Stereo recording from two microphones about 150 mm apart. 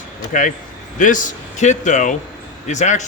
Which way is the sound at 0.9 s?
60° left (ahead or behind).